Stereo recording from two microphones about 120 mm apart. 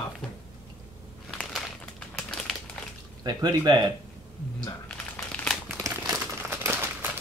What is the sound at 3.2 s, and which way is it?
Speech, 35° right (ahead or behind).